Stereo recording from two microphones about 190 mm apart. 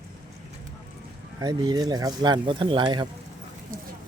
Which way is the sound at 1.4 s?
20° right (ahead or behind).